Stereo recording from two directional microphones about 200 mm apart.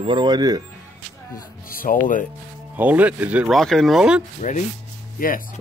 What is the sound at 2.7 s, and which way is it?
Speech, 10° right (ahead or behind).